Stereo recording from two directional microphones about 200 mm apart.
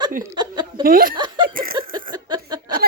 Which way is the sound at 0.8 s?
45° right (ahead or behind).